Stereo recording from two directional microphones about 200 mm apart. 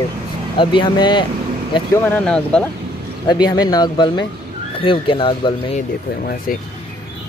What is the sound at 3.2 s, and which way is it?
Speech, 20° left (ahead or behind).